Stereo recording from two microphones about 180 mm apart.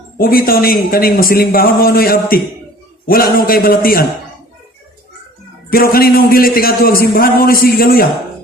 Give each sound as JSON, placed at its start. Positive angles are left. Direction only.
{"t": 0.2, "sound": "a man's voice", "side_deg": 55}
{"t": 5.7, "sound": "a man's voice", "side_deg": 55}